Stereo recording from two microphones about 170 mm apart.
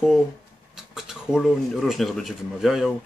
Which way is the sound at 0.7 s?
5° right (ahead or behind).